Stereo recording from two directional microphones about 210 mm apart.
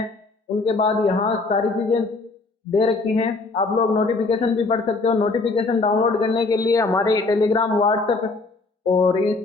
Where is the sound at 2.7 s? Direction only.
25° left (ahead or behind).